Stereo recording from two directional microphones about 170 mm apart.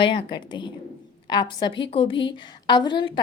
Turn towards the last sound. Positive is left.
turn(degrees=30)  # may be behind; listen again after turning